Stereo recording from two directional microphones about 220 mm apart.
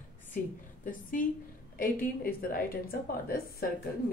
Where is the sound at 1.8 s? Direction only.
40° left (ahead or behind).